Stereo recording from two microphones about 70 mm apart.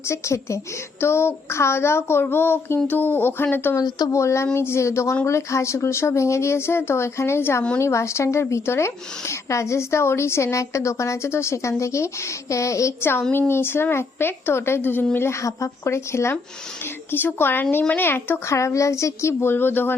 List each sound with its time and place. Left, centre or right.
0.1 s speech: left
3.8 s speech: left
4.1 s speech: left
13.0 s speech: left